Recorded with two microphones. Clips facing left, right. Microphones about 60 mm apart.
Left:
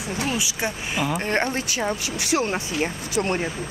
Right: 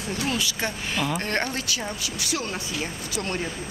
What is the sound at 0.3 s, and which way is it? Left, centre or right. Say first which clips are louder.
Speech: left 1 dB; centre.